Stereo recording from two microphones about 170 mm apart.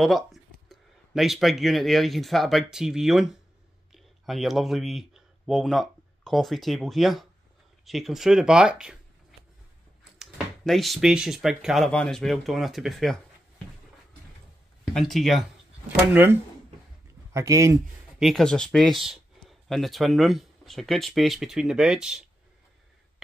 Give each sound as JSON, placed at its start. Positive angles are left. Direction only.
{"t": 0.0, "sound": "speech", "side_deg": 0}
{"t": 10.1, "sound": "speech", "side_deg": 0}
{"t": 15.0, "sound": "speech", "side_deg": 0}
{"t": 16.1, "sound": "speech", "side_deg": -10}
{"t": 18.2, "sound": "speech", "side_deg": 0}